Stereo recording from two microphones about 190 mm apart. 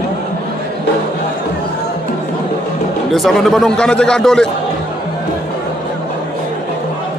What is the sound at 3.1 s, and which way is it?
A man's voice, centre (ahead or behind).